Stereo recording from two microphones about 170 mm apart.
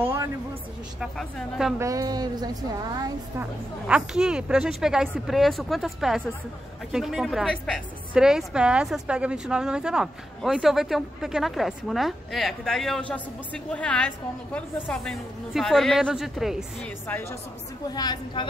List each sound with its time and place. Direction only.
0.0 s a sound: 15° right (ahead or behind)
1.0 s a woman's voice: centre (ahead or behind)
1.8 s speech: 20° right (ahead or behind)
3.3 s a woman's voice: 5° right (ahead or behind)
17.9 s a woman's voice: 25° left (ahead or behind)